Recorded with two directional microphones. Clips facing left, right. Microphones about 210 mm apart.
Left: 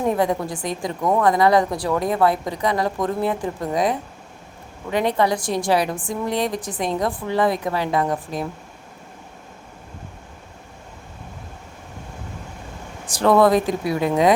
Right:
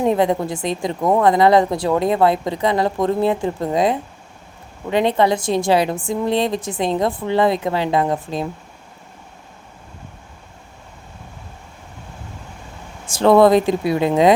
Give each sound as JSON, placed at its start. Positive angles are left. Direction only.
{"t": 0.0, "sound": "a woman's voice", "side_deg": -25}
{"t": 13.1, "sound": "a woman's voice", "side_deg": -25}